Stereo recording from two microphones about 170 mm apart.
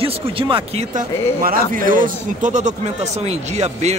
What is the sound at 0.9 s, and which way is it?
A man's voice, 55° right (ahead or behind).